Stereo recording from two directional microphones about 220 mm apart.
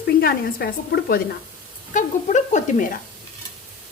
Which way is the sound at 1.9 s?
35° left (ahead or behind).